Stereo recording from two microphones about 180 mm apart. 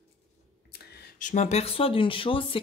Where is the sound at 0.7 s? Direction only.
55° left (ahead or behind); by 2.5 s 30° left (ahead or behind).